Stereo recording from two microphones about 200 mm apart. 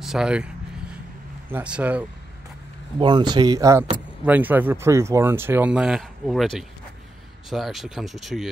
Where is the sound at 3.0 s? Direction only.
20° right (ahead or behind).